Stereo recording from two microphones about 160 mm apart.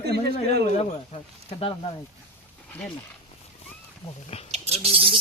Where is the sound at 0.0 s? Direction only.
90° right.